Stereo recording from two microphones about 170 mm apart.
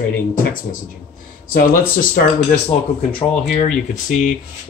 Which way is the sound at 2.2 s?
60° left (ahead or behind).